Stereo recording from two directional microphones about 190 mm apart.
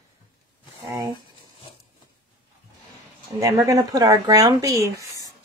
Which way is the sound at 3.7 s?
20° right (ahead or behind).